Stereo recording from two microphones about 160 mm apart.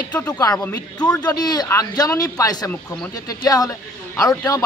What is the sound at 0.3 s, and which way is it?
Speech, 25° left (ahead or behind).